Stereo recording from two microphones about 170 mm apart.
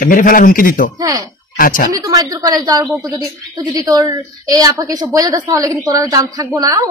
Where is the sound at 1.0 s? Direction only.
20° right (ahead or behind).